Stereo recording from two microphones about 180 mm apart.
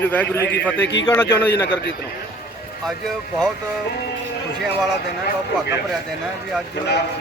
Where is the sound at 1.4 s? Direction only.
70° left (ahead or behind).